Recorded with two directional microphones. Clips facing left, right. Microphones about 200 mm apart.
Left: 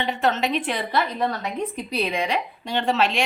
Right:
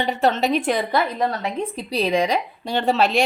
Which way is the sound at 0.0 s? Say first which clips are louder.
Right 3 dB; 35° right (ahead or behind).